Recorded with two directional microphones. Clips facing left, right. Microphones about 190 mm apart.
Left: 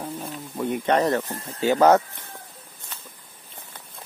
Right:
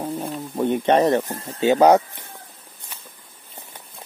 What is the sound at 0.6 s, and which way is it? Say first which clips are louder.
Speech: right 4 dB; 25° right (ahead or behind).